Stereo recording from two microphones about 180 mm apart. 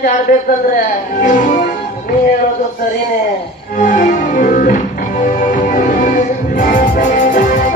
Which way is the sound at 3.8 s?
45° left (ahead or behind).